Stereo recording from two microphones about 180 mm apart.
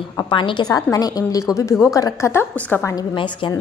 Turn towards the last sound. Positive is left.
turn(degrees=25)  # may be behind; listen again after turning